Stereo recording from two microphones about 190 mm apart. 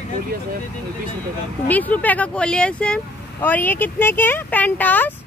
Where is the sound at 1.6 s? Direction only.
10° left (ahead or behind).